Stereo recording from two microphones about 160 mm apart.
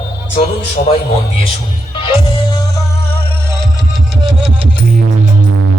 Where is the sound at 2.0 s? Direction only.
30° left (ahead or behind).